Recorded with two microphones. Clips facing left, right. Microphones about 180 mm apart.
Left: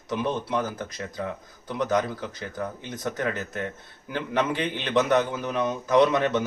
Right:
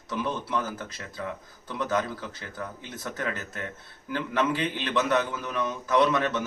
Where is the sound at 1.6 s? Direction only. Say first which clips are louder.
Left 3 dB; 15° left (ahead or behind).